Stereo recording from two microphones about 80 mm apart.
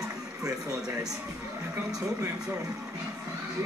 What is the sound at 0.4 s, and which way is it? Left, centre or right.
Speech, right.